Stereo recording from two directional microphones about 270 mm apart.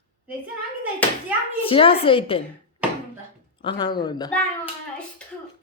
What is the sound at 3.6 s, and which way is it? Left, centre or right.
Speech, centre.